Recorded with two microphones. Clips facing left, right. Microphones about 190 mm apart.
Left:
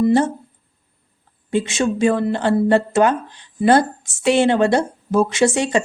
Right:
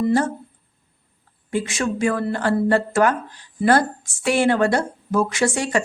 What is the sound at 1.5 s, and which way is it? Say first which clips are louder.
A woman's voice: left 4 dB; 25° left (ahead or behind).